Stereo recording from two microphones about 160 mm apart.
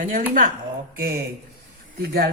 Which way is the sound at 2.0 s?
75° right (ahead or behind).